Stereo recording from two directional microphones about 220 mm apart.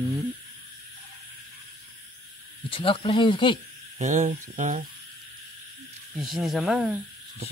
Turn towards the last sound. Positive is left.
turn(degrees=-5)  # may be behind; listen again after turning